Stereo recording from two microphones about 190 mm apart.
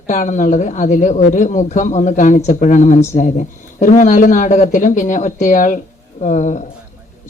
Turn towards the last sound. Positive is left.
turn(degrees=40)  # may be behind; listen again after turning